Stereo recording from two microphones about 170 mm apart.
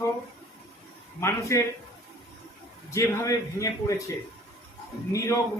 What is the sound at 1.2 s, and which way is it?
Speech, 15° left (ahead or behind).